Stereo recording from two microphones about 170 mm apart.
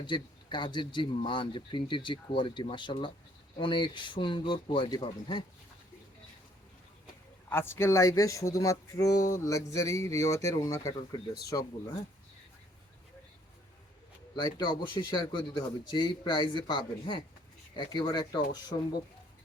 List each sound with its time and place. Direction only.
0.0 s speech: 30° left (ahead or behind)
7.5 s speech: 15° left (ahead or behind)
14.3 s speech: 25° left (ahead or behind)